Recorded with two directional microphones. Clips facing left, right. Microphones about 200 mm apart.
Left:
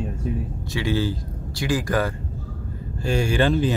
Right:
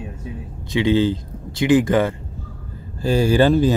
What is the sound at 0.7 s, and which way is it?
Speech, 20° right (ahead or behind).